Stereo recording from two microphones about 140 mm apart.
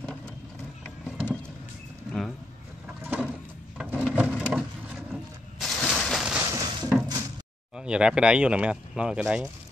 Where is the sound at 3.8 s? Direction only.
5° right (ahead or behind).